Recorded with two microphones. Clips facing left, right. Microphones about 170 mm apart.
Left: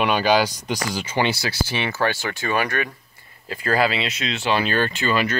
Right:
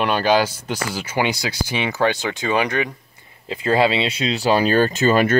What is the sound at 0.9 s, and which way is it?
Speech, 10° right (ahead or behind).